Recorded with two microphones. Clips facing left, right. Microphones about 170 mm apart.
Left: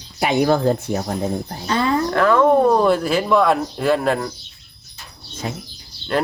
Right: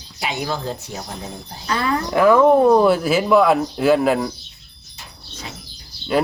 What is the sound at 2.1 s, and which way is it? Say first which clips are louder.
Speech: right 3 dB; 10° right (ahead or behind).